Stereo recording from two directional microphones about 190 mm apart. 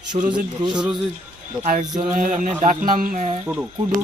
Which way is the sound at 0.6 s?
25° right (ahead or behind).